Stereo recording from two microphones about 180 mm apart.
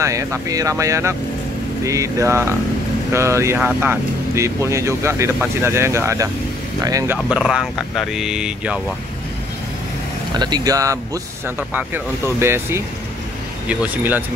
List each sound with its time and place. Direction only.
0.0 s speech: 15° right (ahead or behind)
7.2 s speech: 5° right (ahead or behind)
10.3 s speech: 25° right (ahead or behind)